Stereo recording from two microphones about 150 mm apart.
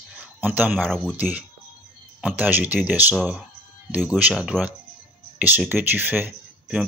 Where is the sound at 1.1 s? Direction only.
10° right (ahead or behind).